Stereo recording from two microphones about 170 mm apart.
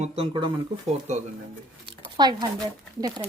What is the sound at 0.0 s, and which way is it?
Speech, 35° right (ahead or behind).